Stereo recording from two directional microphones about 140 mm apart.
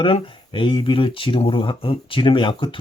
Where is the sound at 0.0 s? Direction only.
40° left (ahead or behind).